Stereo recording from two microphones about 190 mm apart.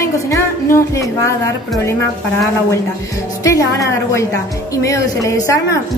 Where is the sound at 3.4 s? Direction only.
15° left (ahead or behind).